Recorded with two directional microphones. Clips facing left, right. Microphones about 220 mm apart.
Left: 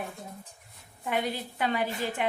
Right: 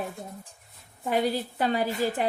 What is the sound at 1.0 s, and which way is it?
A woman's voice, 35° right (ahead or behind).